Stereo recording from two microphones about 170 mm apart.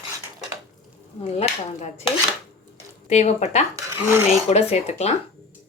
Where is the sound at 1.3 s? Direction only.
40° left (ahead or behind).